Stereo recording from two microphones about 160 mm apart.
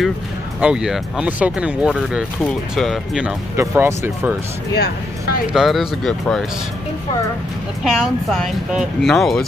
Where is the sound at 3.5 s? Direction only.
15° right (ahead or behind).